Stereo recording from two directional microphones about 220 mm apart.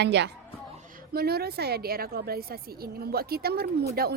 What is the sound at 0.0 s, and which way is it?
A woman's voice, 50° right (ahead or behind).